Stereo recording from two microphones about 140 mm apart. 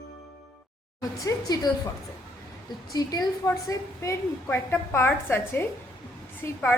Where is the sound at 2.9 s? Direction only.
25° left (ahead or behind).